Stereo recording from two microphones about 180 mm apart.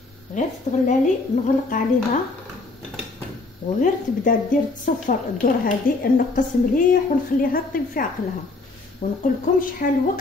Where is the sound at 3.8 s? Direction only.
45° left (ahead or behind).